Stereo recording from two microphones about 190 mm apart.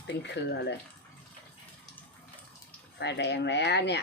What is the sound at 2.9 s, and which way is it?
Speech, 65° left (ahead or behind).